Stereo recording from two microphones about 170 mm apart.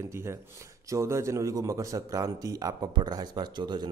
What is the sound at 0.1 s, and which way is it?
A man's voice, 15° right (ahead or behind).